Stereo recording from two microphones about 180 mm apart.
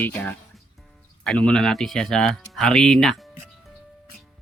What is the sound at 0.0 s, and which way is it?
Speech, 10° left (ahead or behind).